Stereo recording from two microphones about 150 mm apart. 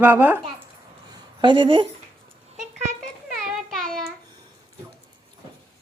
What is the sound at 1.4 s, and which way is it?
Speech, 35° right (ahead or behind).